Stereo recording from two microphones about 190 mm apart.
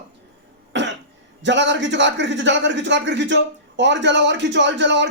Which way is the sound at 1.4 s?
70° right (ahead or behind).